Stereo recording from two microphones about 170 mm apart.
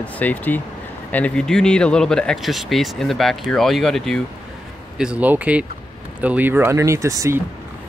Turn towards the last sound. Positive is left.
turn(degrees=-20)  # may be behind; listen again after turning